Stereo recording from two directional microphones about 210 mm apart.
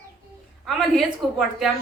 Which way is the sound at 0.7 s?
Centre (ahead or behind).